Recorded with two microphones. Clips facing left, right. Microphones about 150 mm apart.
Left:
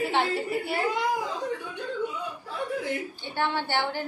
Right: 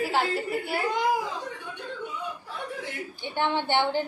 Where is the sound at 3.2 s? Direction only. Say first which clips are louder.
Right 4 dB; 20° right (ahead or behind).